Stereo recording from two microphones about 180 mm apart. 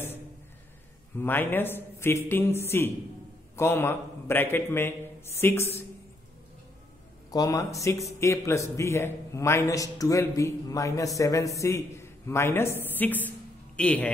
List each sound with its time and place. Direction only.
1.1 s a man's voice: 10° left (ahead or behind)
7.2 s a man's voice: 20° left (ahead or behind)